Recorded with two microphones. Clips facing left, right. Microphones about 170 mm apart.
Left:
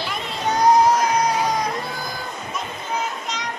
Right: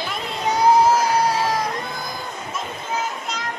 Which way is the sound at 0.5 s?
5° right (ahead or behind).